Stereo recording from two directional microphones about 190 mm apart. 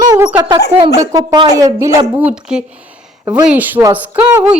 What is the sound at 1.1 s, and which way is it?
A woman's voice, 20° right (ahead or behind).